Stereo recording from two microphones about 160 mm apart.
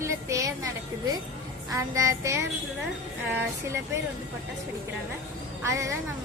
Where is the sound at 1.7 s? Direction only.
20° right (ahead or behind).